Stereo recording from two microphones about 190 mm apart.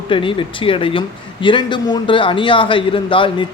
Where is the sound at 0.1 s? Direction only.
25° left (ahead or behind).